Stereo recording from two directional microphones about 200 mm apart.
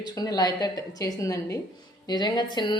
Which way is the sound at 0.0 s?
20° left (ahead or behind).